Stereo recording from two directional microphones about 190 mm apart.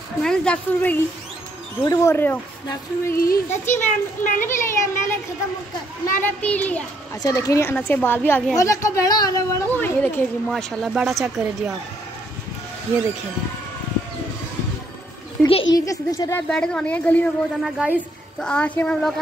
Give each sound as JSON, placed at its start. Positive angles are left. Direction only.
{"t": 0.2, "sound": "a woman's voice", "side_deg": 5}
{"t": 3.2, "sound": "child singing", "side_deg": 45}
{"t": 3.7, "sound": "a woman's voice", "side_deg": 10}
{"t": 15.4, "sound": "a child's voice", "side_deg": 5}
{"t": 15.7, "sound": "a woman's voice", "side_deg": 20}
{"t": 17.7, "sound": "a woman's voice", "side_deg": -10}
{"t": 18.4, "sound": "speech", "side_deg": 5}